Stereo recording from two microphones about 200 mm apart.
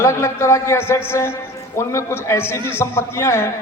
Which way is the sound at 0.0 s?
15° left (ahead or behind).